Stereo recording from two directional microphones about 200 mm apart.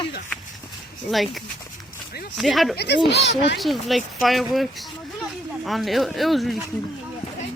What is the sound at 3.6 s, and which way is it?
Speech, centre (ahead or behind).